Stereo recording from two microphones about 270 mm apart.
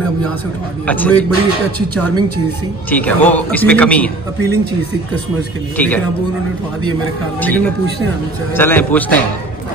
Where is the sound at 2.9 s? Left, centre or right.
Centre.